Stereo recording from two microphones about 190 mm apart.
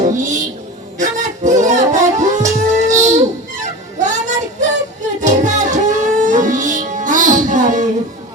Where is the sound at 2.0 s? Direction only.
40° right (ahead or behind).